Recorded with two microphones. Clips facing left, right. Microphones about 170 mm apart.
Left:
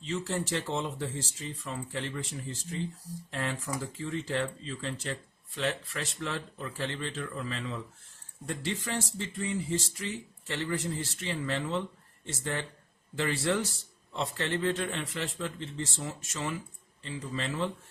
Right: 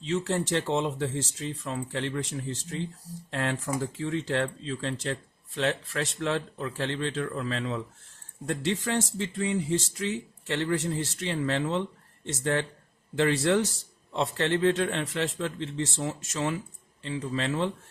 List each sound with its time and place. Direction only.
0.1 s speech: 65° right (ahead or behind)
9.4 s speech: 65° right (ahead or behind)